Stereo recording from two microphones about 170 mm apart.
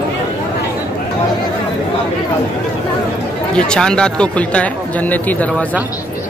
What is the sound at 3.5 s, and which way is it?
Speech, 5° left (ahead or behind).